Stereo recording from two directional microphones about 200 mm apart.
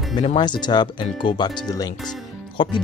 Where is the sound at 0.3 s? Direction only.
20° left (ahead or behind).